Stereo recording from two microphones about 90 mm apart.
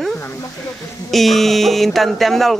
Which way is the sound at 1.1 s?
Centre (ahead or behind).